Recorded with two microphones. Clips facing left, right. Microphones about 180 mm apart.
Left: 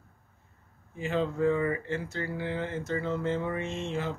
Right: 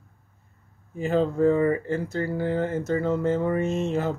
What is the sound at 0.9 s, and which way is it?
Speech, 40° right (ahead or behind).